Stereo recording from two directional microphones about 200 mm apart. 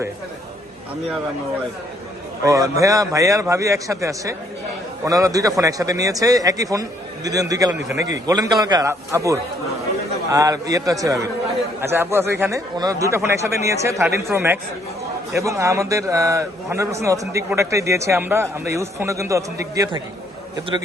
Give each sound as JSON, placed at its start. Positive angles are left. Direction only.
{"t": 2.4, "sound": "a man's voice", "side_deg": -15}